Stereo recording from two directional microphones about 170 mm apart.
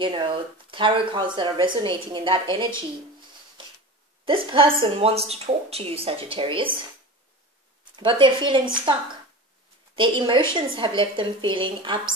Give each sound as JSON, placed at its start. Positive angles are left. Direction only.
{"t": 0.0, "sound": "speech", "side_deg": -30}
{"t": 4.3, "sound": "speech", "side_deg": -30}
{"t": 7.9, "sound": "speech", "side_deg": -30}
{"t": 9.9, "sound": "speech", "side_deg": -30}